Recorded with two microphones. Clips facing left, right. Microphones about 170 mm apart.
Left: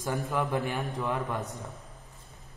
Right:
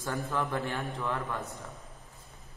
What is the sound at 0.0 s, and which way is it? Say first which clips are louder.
A man's voice: left 2 dB; 15° left (ahead or behind).